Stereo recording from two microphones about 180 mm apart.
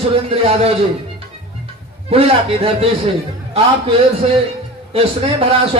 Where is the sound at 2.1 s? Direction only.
30° right (ahead or behind).